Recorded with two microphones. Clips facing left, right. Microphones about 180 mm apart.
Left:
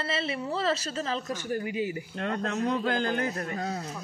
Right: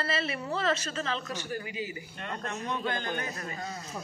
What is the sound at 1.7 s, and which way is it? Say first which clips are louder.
A man's voice: left 7 dB; 60° left (ahead or behind).